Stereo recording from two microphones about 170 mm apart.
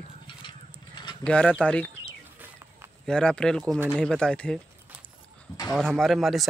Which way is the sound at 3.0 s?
5° left (ahead or behind).